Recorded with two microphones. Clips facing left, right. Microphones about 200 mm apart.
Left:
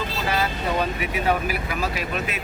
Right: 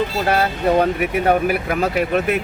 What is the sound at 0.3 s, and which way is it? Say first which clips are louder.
Speech: right 6 dB; 60° right (ahead or behind).